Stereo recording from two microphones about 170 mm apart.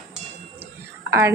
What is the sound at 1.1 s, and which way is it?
Speech, 15° right (ahead or behind).